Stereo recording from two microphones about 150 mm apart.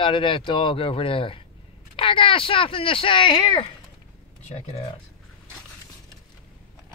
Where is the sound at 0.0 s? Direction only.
35° left (ahead or behind).